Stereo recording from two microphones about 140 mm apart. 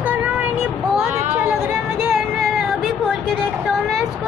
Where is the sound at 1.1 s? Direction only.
55° right (ahead or behind).